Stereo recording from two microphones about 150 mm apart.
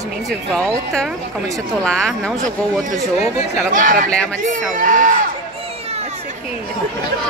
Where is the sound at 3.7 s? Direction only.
60° right (ahead or behind).